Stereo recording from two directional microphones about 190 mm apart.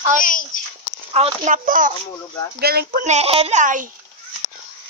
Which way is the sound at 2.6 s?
55° right (ahead or behind).